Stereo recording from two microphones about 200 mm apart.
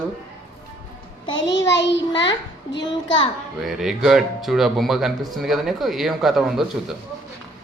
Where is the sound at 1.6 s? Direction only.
60° left (ahead or behind).